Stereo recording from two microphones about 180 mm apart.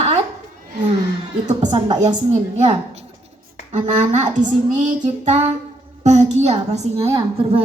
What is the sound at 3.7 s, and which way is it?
A child's voice, 40° right (ahead or behind).